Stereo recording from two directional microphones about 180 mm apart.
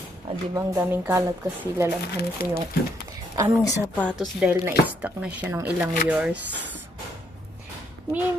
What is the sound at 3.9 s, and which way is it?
A woman's voice, 5° left (ahead or behind).